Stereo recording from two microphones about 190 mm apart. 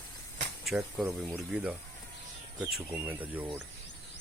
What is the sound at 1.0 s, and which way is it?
Speech, 15° right (ahead or behind).